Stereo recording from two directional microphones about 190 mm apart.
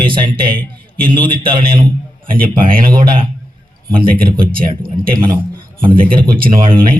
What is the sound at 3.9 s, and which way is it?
A man's voice, 50° right (ahead or behind).